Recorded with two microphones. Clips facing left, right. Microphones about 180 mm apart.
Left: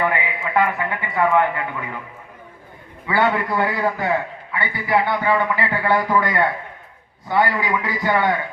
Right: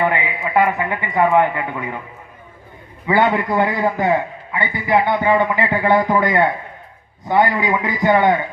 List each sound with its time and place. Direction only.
0.0 s a man's voice: 20° right (ahead or behind)
3.1 s a man's voice: 20° right (ahead or behind)